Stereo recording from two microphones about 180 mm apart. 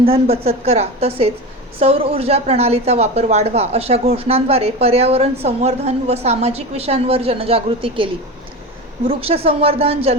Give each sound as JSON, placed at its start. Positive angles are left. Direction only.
{"t": 0.0, "sound": "a woman's voice", "side_deg": -35}